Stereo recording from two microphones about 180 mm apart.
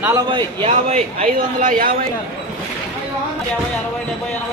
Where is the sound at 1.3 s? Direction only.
50° right (ahead or behind).